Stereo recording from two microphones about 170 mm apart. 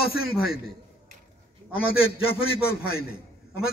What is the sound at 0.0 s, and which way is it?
Speech, 60° left (ahead or behind).